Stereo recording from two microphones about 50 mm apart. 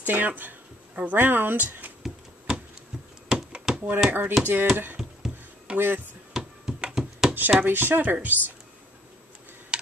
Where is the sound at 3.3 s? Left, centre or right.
Centre.